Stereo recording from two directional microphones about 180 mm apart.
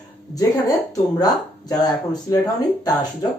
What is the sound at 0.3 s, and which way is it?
Speech, 20° left (ahead or behind).